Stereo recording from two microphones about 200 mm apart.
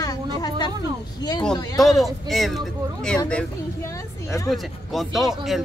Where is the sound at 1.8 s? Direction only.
Centre (ahead or behind).